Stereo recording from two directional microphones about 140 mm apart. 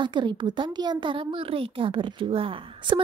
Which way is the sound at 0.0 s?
35° right (ahead or behind).